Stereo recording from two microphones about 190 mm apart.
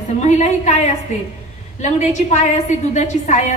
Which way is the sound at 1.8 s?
40° left (ahead or behind).